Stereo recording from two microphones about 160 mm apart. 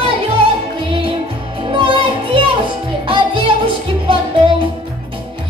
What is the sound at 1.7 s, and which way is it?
Music, 30° right (ahead or behind).